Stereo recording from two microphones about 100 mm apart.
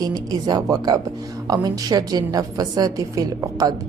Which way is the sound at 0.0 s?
40° right (ahead or behind).